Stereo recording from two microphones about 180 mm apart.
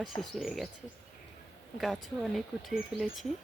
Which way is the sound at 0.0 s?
Centre (ahead or behind).